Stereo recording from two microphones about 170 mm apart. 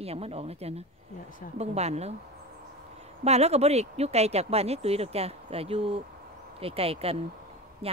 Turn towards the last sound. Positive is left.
turn(degrees=-35)  # may be behind; listen again after turning